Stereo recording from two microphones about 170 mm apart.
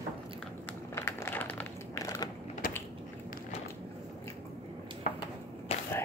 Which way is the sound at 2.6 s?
55° left (ahead or behind).